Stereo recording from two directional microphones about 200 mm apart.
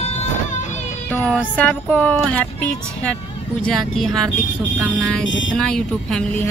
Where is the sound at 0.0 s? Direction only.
35° left (ahead or behind).